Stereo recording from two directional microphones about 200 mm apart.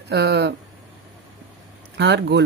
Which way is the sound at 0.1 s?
60° right (ahead or behind).